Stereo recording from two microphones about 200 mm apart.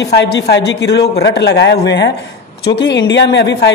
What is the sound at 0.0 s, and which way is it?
A man's voice, 55° left (ahead or behind).